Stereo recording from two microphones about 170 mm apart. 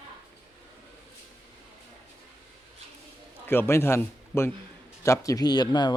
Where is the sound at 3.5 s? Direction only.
15° left (ahead or behind).